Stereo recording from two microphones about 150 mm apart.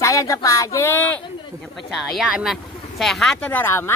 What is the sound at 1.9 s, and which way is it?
Speech, centre (ahead or behind).